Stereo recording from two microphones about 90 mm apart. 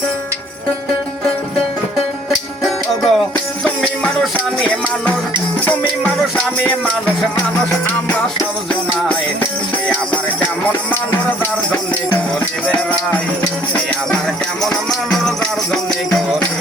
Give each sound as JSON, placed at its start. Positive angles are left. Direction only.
{"t": 2.6, "sound": "music", "side_deg": 5}
{"t": 14.6, "sound": "music", "side_deg": 0}